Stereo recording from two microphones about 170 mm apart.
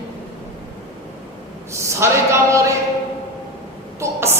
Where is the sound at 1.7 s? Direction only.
15° right (ahead or behind).